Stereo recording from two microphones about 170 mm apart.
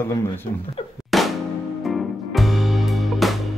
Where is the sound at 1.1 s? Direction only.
Centre (ahead or behind).